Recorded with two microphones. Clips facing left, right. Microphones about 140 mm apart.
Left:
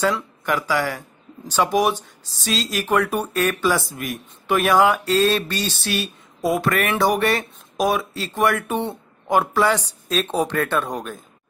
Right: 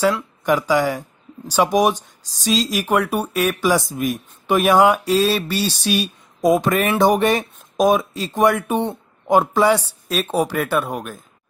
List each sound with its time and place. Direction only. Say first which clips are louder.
0.5 s speech: right 5 dB; 15° right (ahead or behind)